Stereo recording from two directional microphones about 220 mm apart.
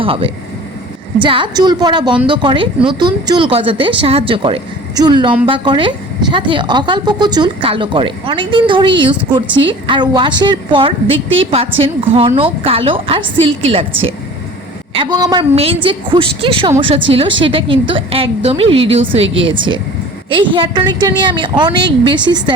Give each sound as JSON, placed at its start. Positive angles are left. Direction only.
{"t": 0.0, "sound": "speech", "side_deg": -25}
{"t": 14.9, "sound": "speech", "side_deg": -20}